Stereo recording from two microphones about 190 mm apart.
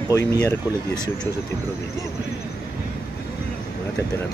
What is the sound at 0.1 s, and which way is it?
Speech, 15° left (ahead or behind).